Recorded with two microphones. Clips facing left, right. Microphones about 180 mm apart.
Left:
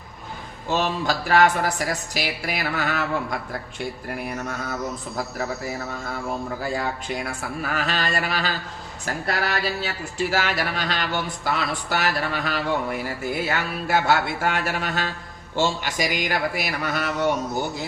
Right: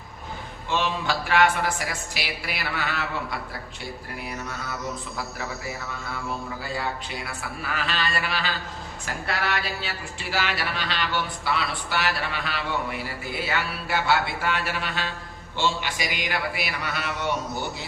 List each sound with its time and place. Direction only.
0.7 s speech: 40° left (ahead or behind)
4.4 s speech: 45° left (ahead or behind)
7.3 s speech: 45° left (ahead or behind)